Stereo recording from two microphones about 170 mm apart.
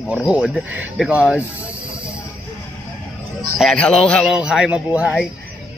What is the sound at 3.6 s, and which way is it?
A man's voice, 5° left (ahead or behind).